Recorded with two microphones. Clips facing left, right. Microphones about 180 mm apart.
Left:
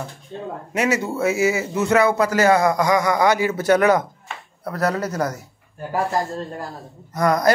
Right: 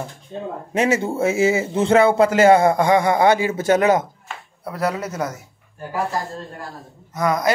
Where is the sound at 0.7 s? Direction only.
25° right (ahead or behind).